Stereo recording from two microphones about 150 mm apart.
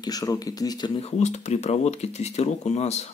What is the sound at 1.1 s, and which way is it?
Speech, 50° left (ahead or behind).